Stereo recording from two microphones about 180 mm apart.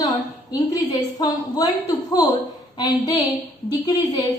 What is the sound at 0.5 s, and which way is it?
A woman's voice, 20° left (ahead or behind).